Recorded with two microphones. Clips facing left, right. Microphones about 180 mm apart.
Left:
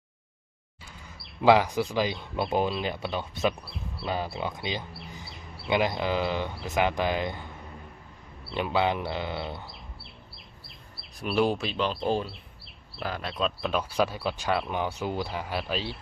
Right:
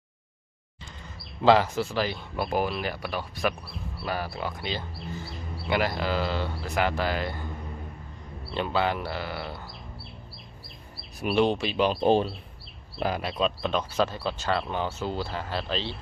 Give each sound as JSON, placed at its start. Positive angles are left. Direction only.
{"t": 1.0, "sound": "speech", "side_deg": 10}
{"t": 8.5, "sound": "speech", "side_deg": 15}
{"t": 11.1, "sound": "speech", "side_deg": -5}
{"t": 11.8, "sound": "speech", "side_deg": -15}
{"t": 13.3, "sound": "speech", "side_deg": 5}